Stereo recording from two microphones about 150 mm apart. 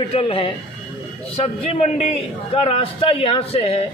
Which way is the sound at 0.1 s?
40° left (ahead or behind).